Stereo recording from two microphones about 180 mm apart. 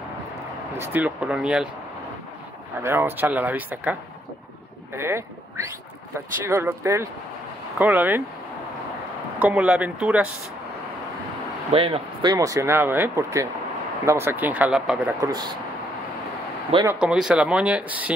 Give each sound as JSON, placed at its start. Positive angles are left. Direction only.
{"t": 0.7, "sound": "speech", "side_deg": -10}
{"t": 2.8, "sound": "speech", "side_deg": -10}
{"t": 4.9, "sound": "speech", "side_deg": -15}
{"t": 6.4, "sound": "speech", "side_deg": -15}
{"t": 9.4, "sound": "speech", "side_deg": -5}
{"t": 11.7, "sound": "speech", "side_deg": -30}
{"t": 15.1, "sound": "speech", "side_deg": -20}
{"t": 16.8, "sound": "speech", "side_deg": -5}